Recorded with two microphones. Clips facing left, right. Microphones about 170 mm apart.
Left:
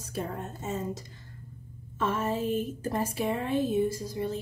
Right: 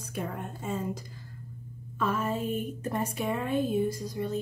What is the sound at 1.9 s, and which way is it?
A woman's voice, 30° left (ahead or behind).